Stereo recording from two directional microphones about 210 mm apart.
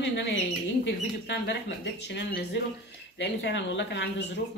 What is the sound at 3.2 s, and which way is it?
Speech, 55° left (ahead or behind).